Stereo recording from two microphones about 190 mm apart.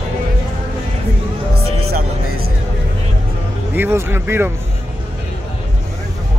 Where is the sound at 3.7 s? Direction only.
10° right (ahead or behind).